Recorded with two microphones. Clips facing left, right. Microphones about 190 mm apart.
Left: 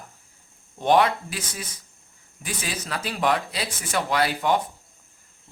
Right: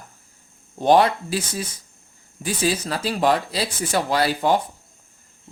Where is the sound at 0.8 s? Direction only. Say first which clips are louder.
Right 3 dB; 35° right (ahead or behind).